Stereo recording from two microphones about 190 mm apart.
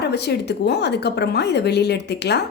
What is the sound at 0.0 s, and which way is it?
A woman's voice, 60° left (ahead or behind).